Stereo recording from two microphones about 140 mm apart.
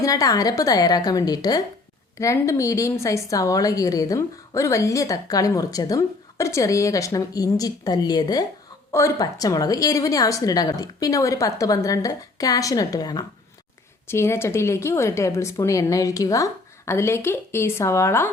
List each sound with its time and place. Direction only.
0.0 s a woman's voice: 25° left (ahead or behind)
14.1 s a woman's voice: 20° left (ahead or behind)